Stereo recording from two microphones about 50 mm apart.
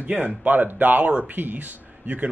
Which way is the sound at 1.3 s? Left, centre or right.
Right.